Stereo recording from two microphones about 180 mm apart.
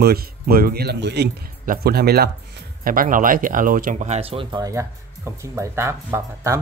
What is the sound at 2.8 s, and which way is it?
Speech, 50° right (ahead or behind).